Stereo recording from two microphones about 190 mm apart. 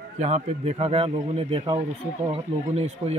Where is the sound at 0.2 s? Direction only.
35° right (ahead or behind).